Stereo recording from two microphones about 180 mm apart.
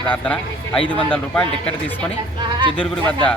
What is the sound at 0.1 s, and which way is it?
Speech, 5° left (ahead or behind).